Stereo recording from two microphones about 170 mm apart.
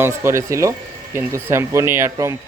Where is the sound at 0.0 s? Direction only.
15° right (ahead or behind).